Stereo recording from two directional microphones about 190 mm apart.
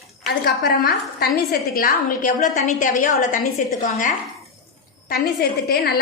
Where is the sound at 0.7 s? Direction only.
55° left (ahead or behind).